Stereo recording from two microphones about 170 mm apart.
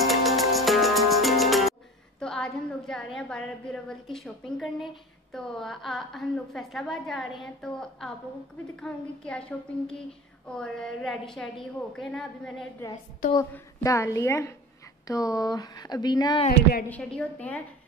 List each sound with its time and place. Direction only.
0.0 s music: centre (ahead or behind)
2.1 s a woman's voice: 5° left (ahead or behind)
13.5 s a woman's voice: 15° left (ahead or behind)
16.9 s a woman's voice: 10° left (ahead or behind)